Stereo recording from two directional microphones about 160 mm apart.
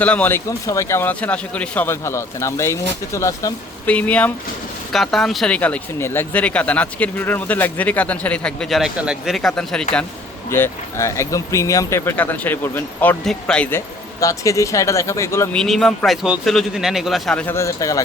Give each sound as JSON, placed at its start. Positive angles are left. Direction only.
{"t": 0.0, "sound": "speech", "side_deg": 10}
{"t": 10.5, "sound": "speech", "side_deg": 15}
{"t": 15.5, "sound": "speech", "side_deg": 0}